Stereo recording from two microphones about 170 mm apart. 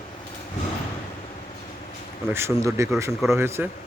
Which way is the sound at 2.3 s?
15° right (ahead or behind).